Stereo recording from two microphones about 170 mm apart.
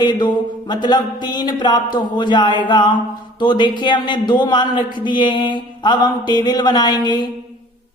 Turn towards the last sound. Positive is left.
turn(degrees=25)  # may be behind; listen again after turning